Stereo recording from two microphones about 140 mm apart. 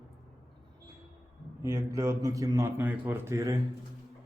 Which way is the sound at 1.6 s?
25° right (ahead or behind).